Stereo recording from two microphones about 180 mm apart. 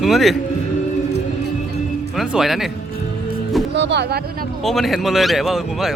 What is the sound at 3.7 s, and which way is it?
Speech, 70° right (ahead or behind).